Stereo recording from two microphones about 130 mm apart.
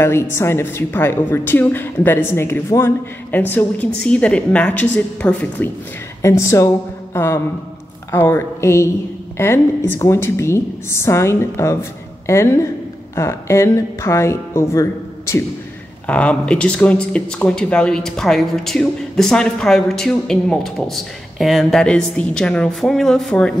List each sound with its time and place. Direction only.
0.0 s a woman's voice: 20° left (ahead or behind)
6.2 s a woman's voice: 20° left (ahead or behind)
16.1 s speech: 10° left (ahead or behind)